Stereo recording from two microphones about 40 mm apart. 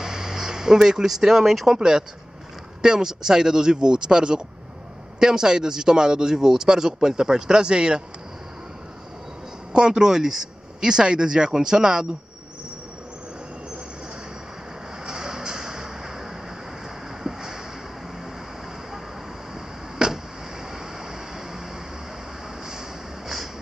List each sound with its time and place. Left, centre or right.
0.0 s speech: centre
1.8 s a man's voice: centre
9.7 s a man's voice: centre
15.0 s a sound: centre
20.0 s vehicle: centre
22.7 s a sound: centre